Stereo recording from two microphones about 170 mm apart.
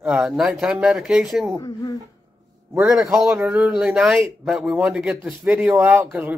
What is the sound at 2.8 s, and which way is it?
A man's voice, centre (ahead or behind).